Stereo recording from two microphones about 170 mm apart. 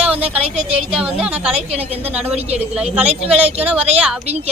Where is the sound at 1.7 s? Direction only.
35° right (ahead or behind).